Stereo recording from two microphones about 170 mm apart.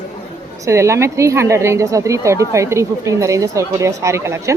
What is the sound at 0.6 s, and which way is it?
Speech, 15° right (ahead or behind).